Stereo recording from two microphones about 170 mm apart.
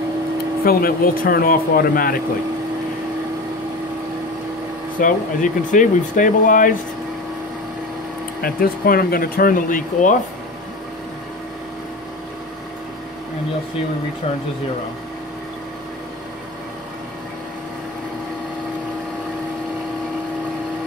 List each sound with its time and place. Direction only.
0.7 s speech: 60° left (ahead or behind)
4.9 s speech: 50° left (ahead or behind)
8.4 s speech: 60° left (ahead or behind)